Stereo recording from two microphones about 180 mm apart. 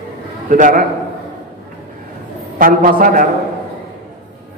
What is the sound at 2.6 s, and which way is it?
Speech, 50° right (ahead or behind).